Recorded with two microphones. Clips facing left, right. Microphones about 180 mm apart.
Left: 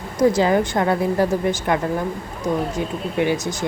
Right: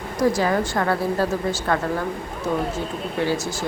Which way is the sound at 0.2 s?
20° left (ahead or behind).